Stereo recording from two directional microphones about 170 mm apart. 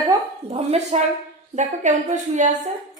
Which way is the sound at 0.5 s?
40° right (ahead or behind).